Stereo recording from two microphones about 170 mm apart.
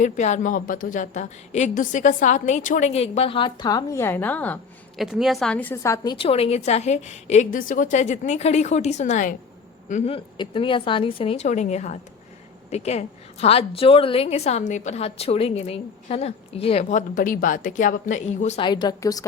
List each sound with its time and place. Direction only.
0.0 s a woman's voice: 45° left (ahead or behind); by 4.6 s 10° left (ahead or behind)
4.9 s a woman's voice: centre (ahead or behind); by 6.1 s 15° left (ahead or behind)
6.1 s a woman's voice: 35° left (ahead or behind)
9.9 s a woman's voice: 35° left (ahead or behind)
17.2 s a woman's voice: 55° left (ahead or behind)
18.6 s a woman's voice: 25° left (ahead or behind)